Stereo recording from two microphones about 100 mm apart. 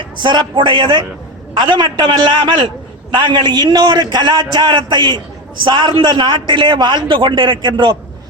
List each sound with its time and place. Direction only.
0.0 s a man's voice: 50° right (ahead or behind)